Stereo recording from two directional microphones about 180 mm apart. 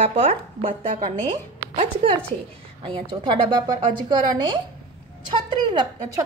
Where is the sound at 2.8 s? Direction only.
25° right (ahead or behind).